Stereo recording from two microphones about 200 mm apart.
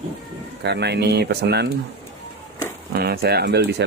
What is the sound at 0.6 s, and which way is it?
Speech, 55° right (ahead or behind).